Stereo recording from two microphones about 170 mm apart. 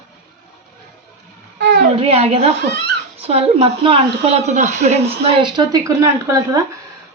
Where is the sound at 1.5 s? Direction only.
90° right.